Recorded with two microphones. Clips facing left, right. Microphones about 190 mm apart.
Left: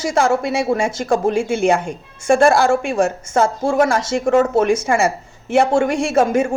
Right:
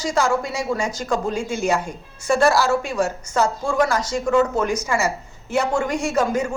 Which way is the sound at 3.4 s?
25° left (ahead or behind).